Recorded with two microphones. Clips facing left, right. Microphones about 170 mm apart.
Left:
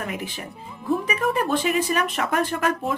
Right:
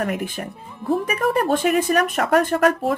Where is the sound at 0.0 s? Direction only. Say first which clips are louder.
Right 6 dB; 50° right (ahead or behind).